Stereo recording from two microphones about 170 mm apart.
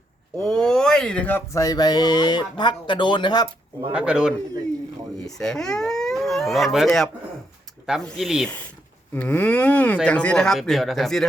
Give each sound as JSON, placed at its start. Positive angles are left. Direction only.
{"t": 0.3, "sound": "speech", "side_deg": 5}
{"t": 3.9, "sound": "speech", "side_deg": -5}